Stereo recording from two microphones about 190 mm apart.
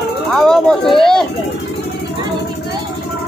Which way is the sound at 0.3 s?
Centre (ahead or behind).